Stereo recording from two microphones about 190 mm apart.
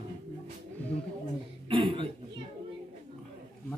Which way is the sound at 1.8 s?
25° right (ahead or behind).